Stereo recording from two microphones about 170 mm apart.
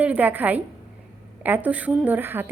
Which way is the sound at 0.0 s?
10° right (ahead or behind).